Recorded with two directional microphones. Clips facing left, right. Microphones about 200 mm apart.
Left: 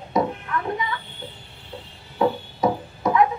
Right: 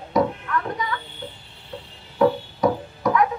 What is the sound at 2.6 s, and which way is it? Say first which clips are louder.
Music: right 1 dB; 25° left (ahead or behind).